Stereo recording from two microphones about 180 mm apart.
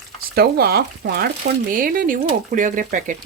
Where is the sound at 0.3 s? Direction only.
60° right (ahead or behind).